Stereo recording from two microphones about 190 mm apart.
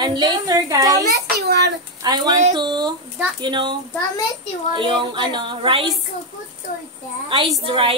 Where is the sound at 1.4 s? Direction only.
60° right (ahead or behind).